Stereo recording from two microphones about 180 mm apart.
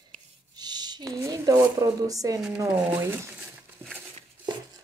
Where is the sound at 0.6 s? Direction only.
20° right (ahead or behind).